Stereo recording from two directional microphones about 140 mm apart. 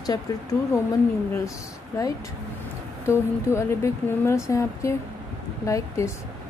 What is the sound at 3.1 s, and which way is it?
Speech, 20° left (ahead or behind).